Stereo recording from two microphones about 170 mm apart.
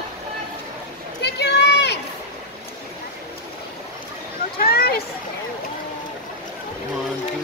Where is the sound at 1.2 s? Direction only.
80° left.